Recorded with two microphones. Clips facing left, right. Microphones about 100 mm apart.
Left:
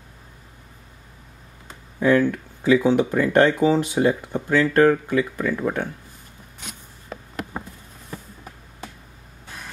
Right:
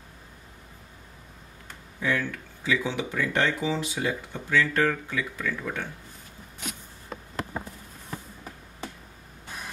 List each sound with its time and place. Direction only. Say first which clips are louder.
2.0 s speech: left 10 dB; 50° left (ahead or behind)